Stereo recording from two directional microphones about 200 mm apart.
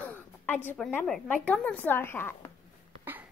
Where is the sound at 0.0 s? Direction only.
10° left (ahead or behind).